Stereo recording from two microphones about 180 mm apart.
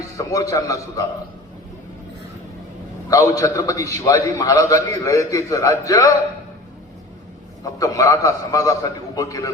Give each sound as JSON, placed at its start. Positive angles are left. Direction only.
{"t": 0.2, "sound": "a man's voice", "side_deg": 20}
{"t": 3.1, "sound": "a man's voice", "side_deg": 20}
{"t": 7.8, "sound": "a man's voice", "side_deg": 20}